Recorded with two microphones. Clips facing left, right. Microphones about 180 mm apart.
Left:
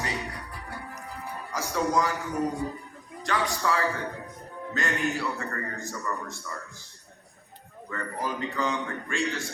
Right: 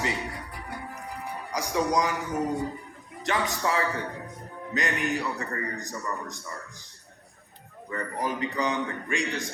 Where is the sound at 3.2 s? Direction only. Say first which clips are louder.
Even; 20° right (ahead or behind).